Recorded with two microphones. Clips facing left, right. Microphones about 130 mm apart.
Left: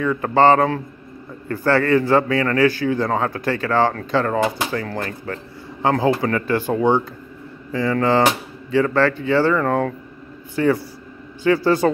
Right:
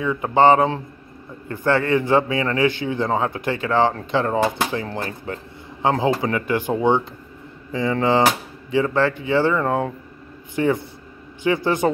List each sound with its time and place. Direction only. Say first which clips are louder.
0.0 s a man's voice: left 1 dB; 20° right (ahead or behind)